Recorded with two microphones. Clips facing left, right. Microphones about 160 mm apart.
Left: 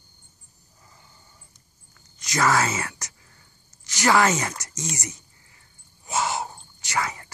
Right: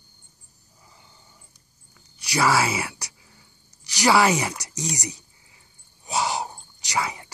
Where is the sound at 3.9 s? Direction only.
15° right (ahead or behind).